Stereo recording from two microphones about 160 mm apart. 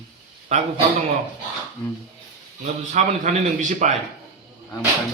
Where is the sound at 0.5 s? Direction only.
45° right (ahead or behind).